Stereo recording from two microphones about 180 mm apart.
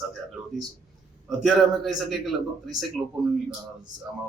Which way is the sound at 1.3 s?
Centre (ahead or behind).